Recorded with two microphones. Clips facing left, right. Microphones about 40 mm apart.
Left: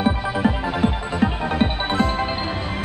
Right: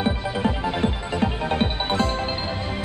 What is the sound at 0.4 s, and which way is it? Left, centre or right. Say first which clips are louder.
Music: left 2 dB; centre.